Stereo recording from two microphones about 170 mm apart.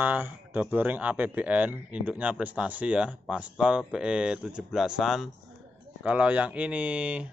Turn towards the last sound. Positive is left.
turn(degrees=-5)  # may be behind; listen again after turning